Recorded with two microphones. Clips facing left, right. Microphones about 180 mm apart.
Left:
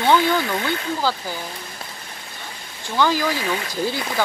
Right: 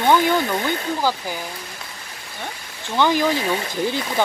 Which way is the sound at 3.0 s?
20° right (ahead or behind).